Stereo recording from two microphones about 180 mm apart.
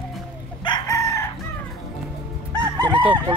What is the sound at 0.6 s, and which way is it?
Chicken, 20° left (ahead or behind).